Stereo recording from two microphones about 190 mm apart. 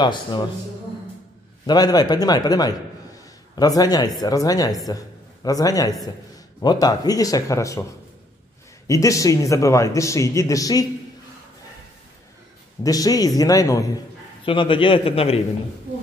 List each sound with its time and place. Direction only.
0.0 s speech: 25° left (ahead or behind)
1.7 s speech: 20° left (ahead or behind)
8.8 s a man's voice: 15° left (ahead or behind)
12.8 s speech: 20° left (ahead or behind)